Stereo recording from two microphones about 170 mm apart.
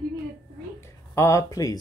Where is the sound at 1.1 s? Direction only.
20° left (ahead or behind).